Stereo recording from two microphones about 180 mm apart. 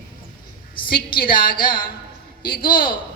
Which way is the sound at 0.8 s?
55° left (ahead or behind).